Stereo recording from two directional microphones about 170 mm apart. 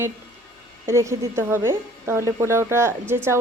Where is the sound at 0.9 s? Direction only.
15° right (ahead or behind).